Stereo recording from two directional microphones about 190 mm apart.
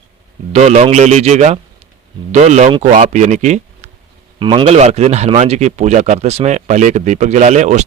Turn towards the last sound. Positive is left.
turn(degrees=-40)  # may be behind; listen again after turning